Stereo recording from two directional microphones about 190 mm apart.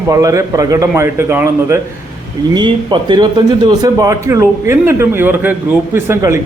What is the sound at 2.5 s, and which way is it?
A man's voice, 25° right (ahead or behind).